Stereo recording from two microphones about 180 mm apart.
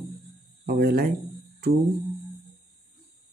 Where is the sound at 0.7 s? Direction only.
55° right (ahead or behind).